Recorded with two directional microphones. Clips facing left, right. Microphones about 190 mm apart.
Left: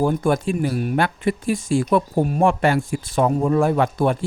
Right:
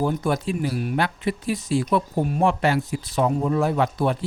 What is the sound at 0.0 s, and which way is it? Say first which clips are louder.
Speech: left 4 dB; 50° left (ahead or behind).